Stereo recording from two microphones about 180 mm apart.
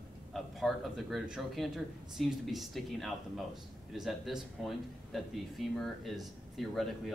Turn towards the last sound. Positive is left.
turn(degrees=0)  # may be behind; listen again after turning